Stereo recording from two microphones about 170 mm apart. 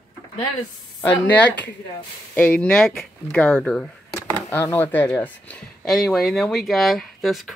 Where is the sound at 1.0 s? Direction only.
10° left (ahead or behind).